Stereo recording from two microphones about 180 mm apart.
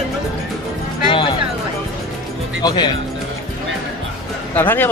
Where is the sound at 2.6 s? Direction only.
25° left (ahead or behind).